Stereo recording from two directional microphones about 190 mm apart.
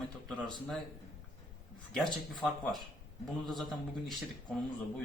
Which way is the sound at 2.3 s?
Centre (ahead or behind).